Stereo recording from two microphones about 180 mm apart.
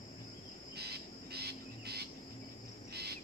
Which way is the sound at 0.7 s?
65° right (ahead or behind).